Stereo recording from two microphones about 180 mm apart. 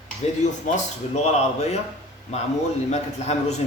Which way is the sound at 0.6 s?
40° left (ahead or behind).